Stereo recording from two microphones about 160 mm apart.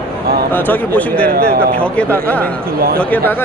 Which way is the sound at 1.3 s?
75° right (ahead or behind).